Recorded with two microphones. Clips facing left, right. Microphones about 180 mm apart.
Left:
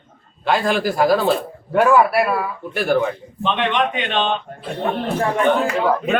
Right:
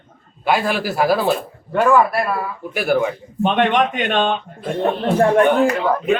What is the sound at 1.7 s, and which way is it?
Speech, 10° left (ahead or behind).